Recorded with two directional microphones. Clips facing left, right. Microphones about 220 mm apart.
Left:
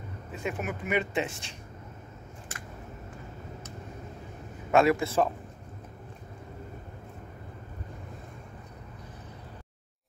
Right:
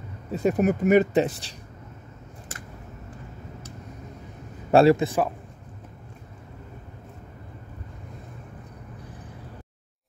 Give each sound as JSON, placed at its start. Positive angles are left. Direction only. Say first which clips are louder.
{"t": 0.3, "sound": "speech", "louder": "right 12 dB", "side_deg": -40}
{"t": 4.6, "sound": "speech", "louder": "right 6 dB", "side_deg": -35}
{"t": 4.9, "sound": "speech", "louder": "right 3 dB", "side_deg": -15}